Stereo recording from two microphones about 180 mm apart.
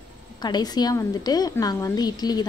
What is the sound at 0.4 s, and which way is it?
A woman's voice, 25° left (ahead or behind).